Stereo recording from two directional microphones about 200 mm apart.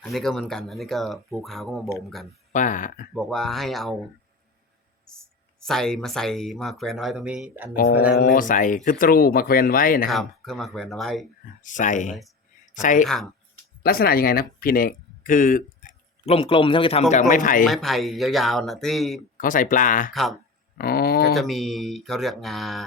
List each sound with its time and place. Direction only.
0.0 s speech: centre (ahead or behind)
2.5 s speech: 40° left (ahead or behind)
3.2 s speech: centre (ahead or behind)
5.0 s speech: 5° left (ahead or behind)
7.8 s speech: 50° left (ahead or behind)
10.1 s speech: centre (ahead or behind)
11.6 s speech: 40° left (ahead or behind)
17.7 s speech: centre (ahead or behind)
19.4 s speech: 40° left (ahead or behind)
20.7 s a sound: 50° left (ahead or behind)
21.3 s speech: centre (ahead or behind)